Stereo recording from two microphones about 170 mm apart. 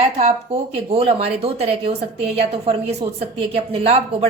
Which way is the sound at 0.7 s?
35° right (ahead or behind).